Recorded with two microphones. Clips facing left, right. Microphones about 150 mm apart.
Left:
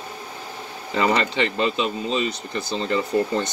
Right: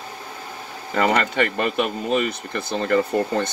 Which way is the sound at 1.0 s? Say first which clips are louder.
Right 1 dB; 55° right (ahead or behind).